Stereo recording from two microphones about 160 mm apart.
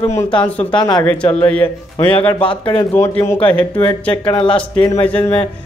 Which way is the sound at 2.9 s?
15° left (ahead or behind).